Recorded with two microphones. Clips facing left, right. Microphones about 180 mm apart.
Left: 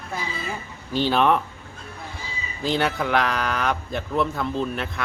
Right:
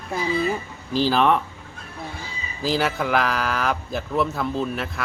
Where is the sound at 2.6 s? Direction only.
Centre (ahead or behind).